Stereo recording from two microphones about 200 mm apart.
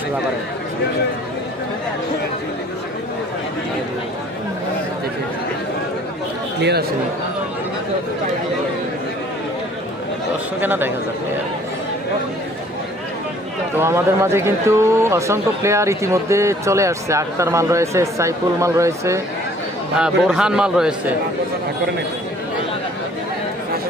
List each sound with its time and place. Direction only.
6.6 s speech: 55° right (ahead or behind)
10.6 s speech: 10° right (ahead or behind)
13.7 s speech: 15° right (ahead or behind)
20.0 s a man's voice: 5° right (ahead or behind)